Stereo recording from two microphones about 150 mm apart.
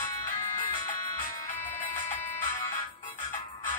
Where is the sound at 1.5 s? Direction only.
15° left (ahead or behind).